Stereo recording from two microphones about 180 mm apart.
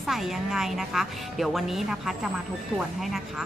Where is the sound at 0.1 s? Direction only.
Centre (ahead or behind).